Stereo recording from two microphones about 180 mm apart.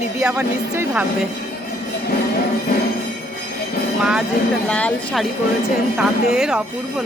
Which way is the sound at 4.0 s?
5° right (ahead or behind).